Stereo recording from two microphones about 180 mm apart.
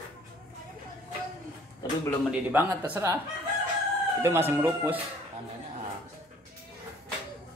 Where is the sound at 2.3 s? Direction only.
10° right (ahead or behind).